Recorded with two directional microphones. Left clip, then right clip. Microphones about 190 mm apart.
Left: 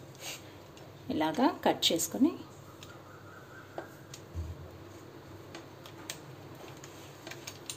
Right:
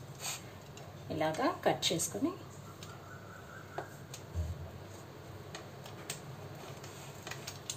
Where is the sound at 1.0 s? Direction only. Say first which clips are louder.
Left 3 dB; 45° left (ahead or behind).